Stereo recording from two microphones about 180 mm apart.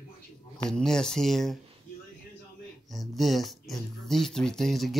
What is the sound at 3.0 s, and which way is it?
Speech, centre (ahead or behind).